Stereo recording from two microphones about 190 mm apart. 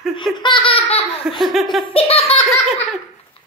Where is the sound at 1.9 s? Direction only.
30° left (ahead or behind).